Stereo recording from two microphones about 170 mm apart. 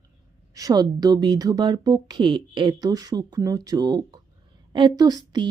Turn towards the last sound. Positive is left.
turn(degrees=-25)  # may be behind; listen again after turning